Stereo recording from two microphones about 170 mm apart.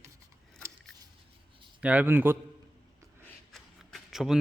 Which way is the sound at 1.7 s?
10° right (ahead or behind).